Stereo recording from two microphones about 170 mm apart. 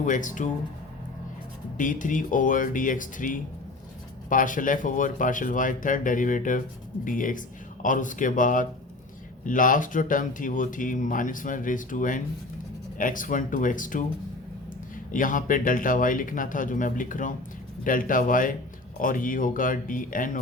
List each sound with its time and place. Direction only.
0.0 s speech: 50° left (ahead or behind)
1.8 s speech: 50° left (ahead or behind)
15.1 s speech: 50° left (ahead or behind)